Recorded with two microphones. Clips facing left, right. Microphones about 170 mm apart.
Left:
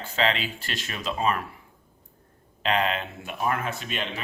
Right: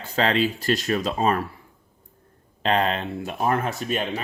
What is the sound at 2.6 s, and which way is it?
Speech, 40° right (ahead or behind).